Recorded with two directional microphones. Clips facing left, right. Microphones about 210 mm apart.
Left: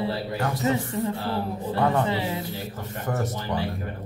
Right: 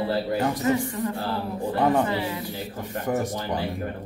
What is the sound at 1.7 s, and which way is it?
Speech, 15° right (ahead or behind).